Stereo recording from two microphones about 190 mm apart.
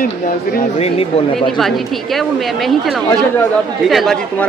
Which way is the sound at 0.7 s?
30° left (ahead or behind).